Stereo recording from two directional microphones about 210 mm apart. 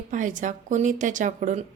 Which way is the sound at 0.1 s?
35° right (ahead or behind).